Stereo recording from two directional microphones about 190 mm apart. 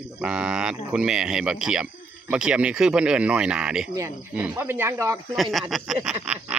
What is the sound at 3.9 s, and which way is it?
Speech, 15° right (ahead or behind).